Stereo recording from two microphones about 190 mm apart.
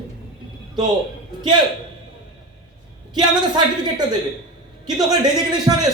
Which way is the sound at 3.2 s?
20° right (ahead or behind).